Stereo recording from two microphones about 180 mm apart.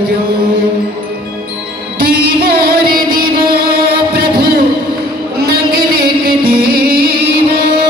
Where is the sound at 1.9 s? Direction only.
55° right (ahead or behind).